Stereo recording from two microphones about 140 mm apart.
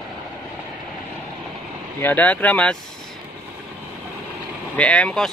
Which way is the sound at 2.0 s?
10° left (ahead or behind).